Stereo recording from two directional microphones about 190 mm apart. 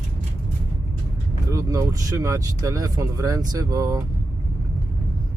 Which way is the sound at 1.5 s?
15° right (ahead or behind).